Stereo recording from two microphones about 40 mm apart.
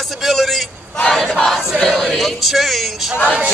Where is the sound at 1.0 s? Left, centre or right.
Centre.